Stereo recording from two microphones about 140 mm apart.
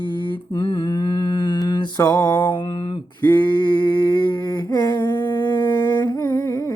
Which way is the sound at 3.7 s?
10° left (ahead or behind).